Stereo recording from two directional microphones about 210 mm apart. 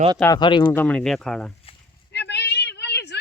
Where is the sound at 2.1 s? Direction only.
55° left (ahead or behind).